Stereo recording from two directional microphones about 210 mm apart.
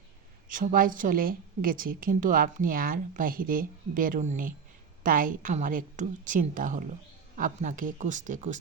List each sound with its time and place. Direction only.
0.4 s a woman's voice: 40° right (ahead or behind)